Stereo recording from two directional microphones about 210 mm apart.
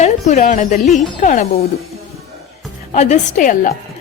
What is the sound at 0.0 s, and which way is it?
A woman's voice, 35° left (ahead or behind).